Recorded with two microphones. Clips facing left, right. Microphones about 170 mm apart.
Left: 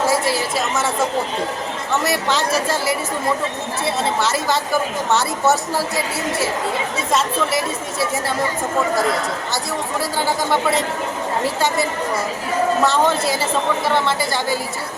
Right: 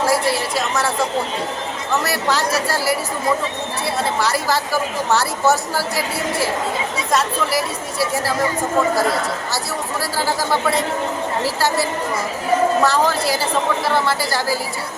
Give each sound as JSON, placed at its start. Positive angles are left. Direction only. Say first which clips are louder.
{"t": 0.3, "sound": "a woman's voice", "louder": "even", "side_deg": 0}
{"t": 2.3, "sound": "a woman's voice", "louder": "even", "side_deg": 0}
{"t": 4.4, "sound": "a woman's voice", "louder": "left 1 dB", "side_deg": 0}
{"t": 10.0, "sound": "a woman's voice", "louder": "even", "side_deg": 0}
{"t": 11.4, "sound": "speech", "louder": "even", "side_deg": 20}
{"t": 12.8, "sound": "a woman's voice", "louder": "even", "side_deg": 0}
{"t": 13.2, "sound": "speech", "louder": "even", "side_deg": 25}
{"t": 13.8, "sound": "a woman's voice", "louder": "even", "side_deg": 0}